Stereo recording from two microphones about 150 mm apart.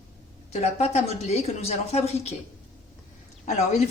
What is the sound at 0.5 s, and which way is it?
A woman's voice, 45° left (ahead or behind).